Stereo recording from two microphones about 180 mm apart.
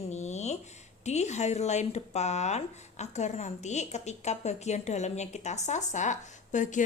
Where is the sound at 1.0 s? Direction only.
40° left (ahead or behind).